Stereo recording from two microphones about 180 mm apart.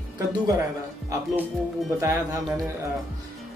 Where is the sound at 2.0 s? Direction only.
20° right (ahead or behind).